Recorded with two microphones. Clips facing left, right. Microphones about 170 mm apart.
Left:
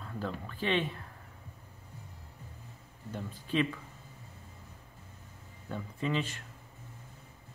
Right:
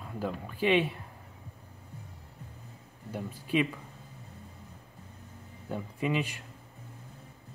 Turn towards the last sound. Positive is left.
turn(degrees=-10)  # may be behind; listen again after turning